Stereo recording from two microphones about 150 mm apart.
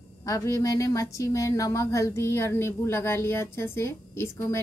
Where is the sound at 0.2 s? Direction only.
20° left (ahead or behind).